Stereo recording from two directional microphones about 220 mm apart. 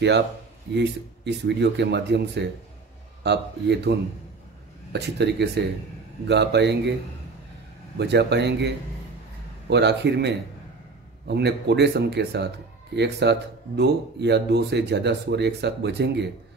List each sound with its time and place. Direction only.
0.7 s speech: 50° right (ahead or behind)
4.9 s speech: 50° right (ahead or behind)
8.0 s speech: 50° right (ahead or behind)